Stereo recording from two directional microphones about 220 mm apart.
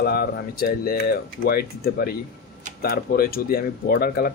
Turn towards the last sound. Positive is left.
turn(degrees=40)  # may be behind; listen again after turning